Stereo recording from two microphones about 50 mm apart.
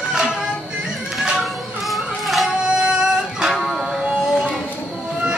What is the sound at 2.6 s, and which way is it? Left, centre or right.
Music, centre.